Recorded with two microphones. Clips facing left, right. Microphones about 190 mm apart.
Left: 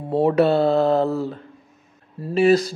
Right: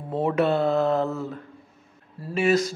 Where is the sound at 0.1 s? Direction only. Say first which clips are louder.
Left 5 dB; 35° left (ahead or behind).